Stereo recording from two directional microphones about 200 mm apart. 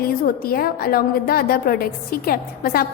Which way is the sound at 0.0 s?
45° left (ahead or behind).